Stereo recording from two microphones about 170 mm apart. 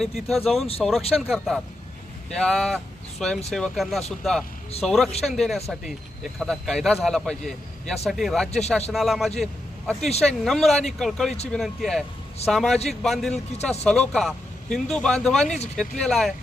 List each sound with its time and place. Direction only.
0.3 s a man's voice: centre (ahead or behind)
15.4 s speech: 40° left (ahead or behind)
15.7 s a man's voice: 5° left (ahead or behind)